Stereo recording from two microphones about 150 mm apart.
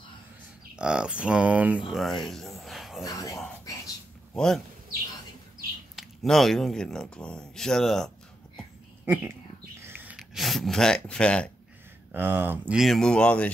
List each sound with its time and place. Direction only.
0.7 s speech: 5° right (ahead or behind)
1.9 s a sound: centre (ahead or behind)
3.0 s speech: 20° left (ahead or behind)
3.6 s whispering: 20° left (ahead or behind)
5.9 s speech: centre (ahead or behind)
9.0 s speech: 10° right (ahead or behind)
9.8 s a sound: 15° right (ahead or behind); by 11.5 s 5° left (ahead or behind)
12.1 s speech: 15° right (ahead or behind); by 13.5 s 10° left (ahead or behind)